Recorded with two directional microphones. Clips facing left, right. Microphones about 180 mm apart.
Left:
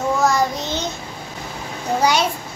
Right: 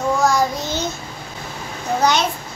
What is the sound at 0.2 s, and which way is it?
Child singing, centre (ahead or behind).